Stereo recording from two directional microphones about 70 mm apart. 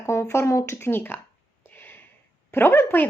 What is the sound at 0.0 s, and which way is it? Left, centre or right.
Speech, left.